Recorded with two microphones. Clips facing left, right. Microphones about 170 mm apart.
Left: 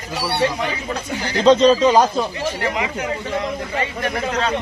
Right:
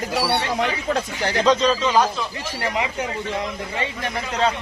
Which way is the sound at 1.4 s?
30° left (ahead or behind).